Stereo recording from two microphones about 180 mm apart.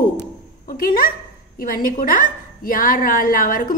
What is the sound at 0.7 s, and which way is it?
A woman's voice, 55° left (ahead or behind).